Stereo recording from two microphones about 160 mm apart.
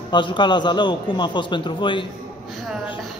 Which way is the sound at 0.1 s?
30° left (ahead or behind).